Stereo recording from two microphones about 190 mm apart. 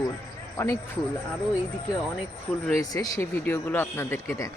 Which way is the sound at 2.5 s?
Centre (ahead or behind).